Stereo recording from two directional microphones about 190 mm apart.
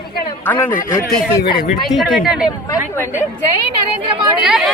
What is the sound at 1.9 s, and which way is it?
Speech, centre (ahead or behind).